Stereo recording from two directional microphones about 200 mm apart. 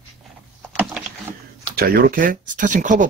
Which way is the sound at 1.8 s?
50° right (ahead or behind).